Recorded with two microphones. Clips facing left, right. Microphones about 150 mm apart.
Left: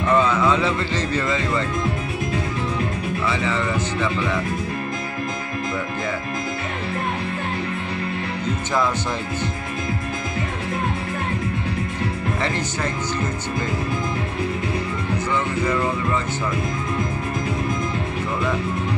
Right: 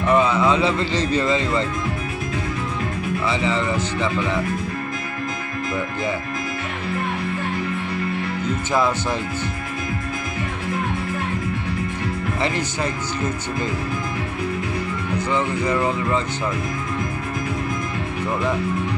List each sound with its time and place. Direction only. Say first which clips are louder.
0.1 s speech: right 1 dB; 15° right (ahead or behind)